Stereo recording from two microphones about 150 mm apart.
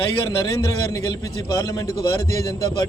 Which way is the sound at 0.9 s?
25° left (ahead or behind).